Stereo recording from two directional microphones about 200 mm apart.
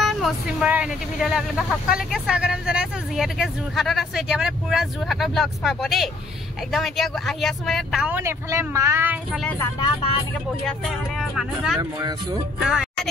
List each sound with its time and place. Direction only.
0.0 s speech: centre (ahead or behind)
9.8 s speech: 25° left (ahead or behind)
11.1 s speech: centre (ahead or behind)
11.8 s speech: 15° right (ahead or behind)
12.6 s speech: centre (ahead or behind)